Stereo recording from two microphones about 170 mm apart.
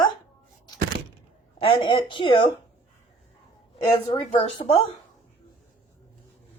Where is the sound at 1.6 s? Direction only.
30° left (ahead or behind).